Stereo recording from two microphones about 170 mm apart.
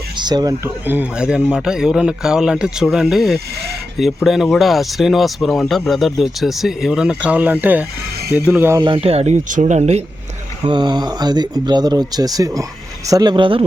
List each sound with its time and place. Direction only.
0.2 s speech: 25° right (ahead or behind)
8.8 s speech: 30° right (ahead or behind)
10.7 s speech: 25° right (ahead or behind)